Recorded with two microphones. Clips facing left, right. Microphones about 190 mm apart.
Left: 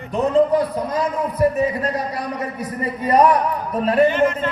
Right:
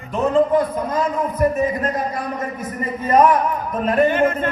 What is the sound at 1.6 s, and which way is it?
A man's voice, 35° left (ahead or behind).